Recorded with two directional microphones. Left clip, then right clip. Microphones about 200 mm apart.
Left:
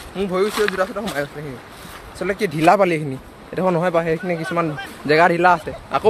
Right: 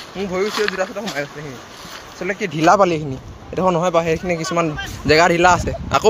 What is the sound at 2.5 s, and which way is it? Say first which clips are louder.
Speech: right 2 dB; centre (ahead or behind).